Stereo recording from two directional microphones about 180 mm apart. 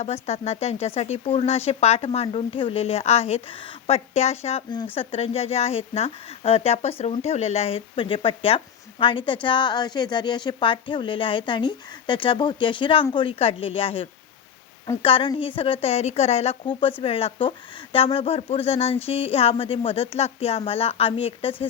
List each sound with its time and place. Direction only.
0.0 s speech: 35° left (ahead or behind)